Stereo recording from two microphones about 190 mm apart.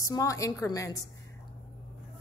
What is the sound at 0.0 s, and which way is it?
Speech, 15° left (ahead or behind).